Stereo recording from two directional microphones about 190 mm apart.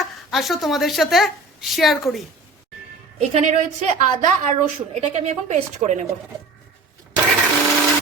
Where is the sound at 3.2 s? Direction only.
35° right (ahead or behind).